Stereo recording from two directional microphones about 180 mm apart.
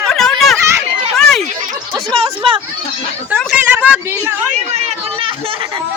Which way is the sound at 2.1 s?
30° right (ahead or behind).